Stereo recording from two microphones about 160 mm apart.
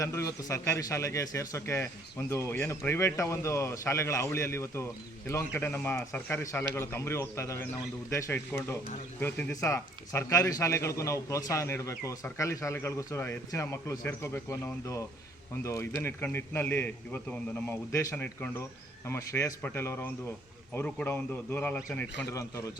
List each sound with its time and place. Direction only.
0.0 s a man's voice: 20° left (ahead or behind)